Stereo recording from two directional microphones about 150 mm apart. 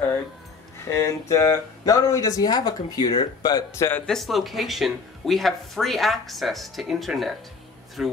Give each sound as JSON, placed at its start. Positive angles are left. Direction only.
{"t": 0.7, "sound": "speech", "side_deg": 20}
{"t": 4.0, "sound": "speech", "side_deg": 0}